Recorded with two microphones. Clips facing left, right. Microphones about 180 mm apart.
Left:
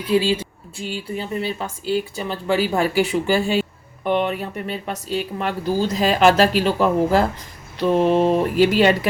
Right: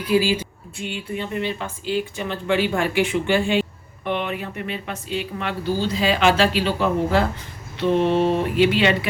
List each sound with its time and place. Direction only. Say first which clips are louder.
0.1 s speech: left 1 dB; 30° left (ahead or behind)